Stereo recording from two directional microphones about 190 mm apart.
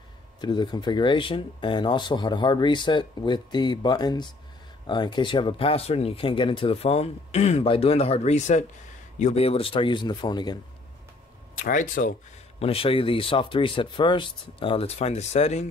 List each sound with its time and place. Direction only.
0.4 s speech: 20° left (ahead or behind)
11.6 s speech: 45° left (ahead or behind)
12.5 s speech: 30° left (ahead or behind)